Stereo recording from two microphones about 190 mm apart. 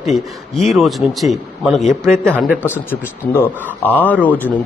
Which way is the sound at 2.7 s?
10° left (ahead or behind).